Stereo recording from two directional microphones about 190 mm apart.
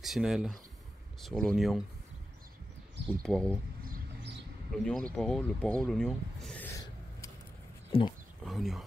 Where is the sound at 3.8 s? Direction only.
55° right (ahead or behind).